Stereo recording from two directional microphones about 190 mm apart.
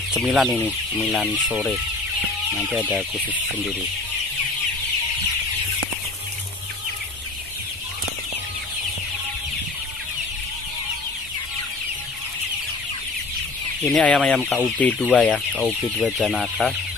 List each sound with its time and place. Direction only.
0.1 s speech: centre (ahead or behind)
13.9 s speech: 5° left (ahead or behind)